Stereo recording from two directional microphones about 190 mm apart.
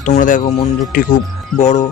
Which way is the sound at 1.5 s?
40° left (ahead or behind).